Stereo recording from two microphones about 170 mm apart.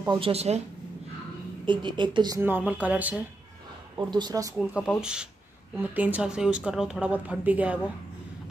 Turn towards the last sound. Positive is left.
turn(degrees=-10)  # may be behind; listen again after turning